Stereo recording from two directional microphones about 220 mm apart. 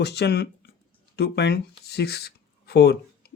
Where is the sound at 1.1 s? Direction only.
50° left (ahead or behind).